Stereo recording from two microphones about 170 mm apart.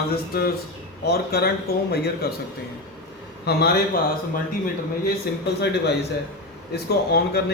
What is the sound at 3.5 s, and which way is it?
Speech, 65° left (ahead or behind).